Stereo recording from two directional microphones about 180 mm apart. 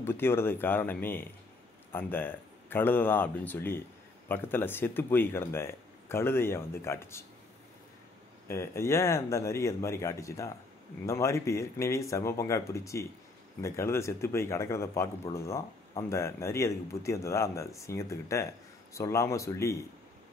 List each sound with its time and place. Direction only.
0.0 s speech: 15° left (ahead or behind)
8.5 s speech: 15° left (ahead or behind)